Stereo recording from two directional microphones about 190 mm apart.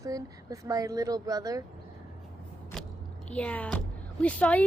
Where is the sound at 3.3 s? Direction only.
5° left (ahead or behind).